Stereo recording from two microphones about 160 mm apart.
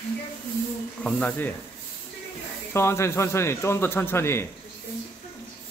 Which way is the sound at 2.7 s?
15° left (ahead or behind).